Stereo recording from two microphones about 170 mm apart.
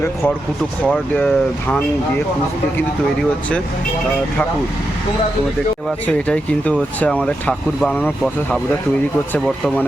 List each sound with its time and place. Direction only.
0.9 s speech: 10° left (ahead or behind)
6.1 s speech: 10° left (ahead or behind)